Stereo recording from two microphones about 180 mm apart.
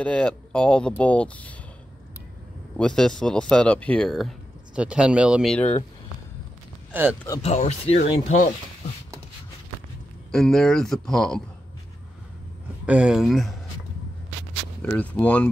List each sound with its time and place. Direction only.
0.0 s speech: 5° left (ahead or behind)
2.8 s speech: 5° left (ahead or behind)
6.9 s speech: 10° right (ahead or behind)
7.4 s speech: 35° left (ahead or behind)
10.3 s speech: 5° left (ahead or behind)
12.8 s speech: 5° right (ahead or behind)
14.8 s speech: 10° left (ahead or behind)